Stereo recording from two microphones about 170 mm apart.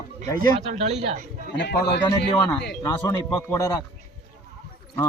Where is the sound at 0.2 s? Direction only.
45° right (ahead or behind).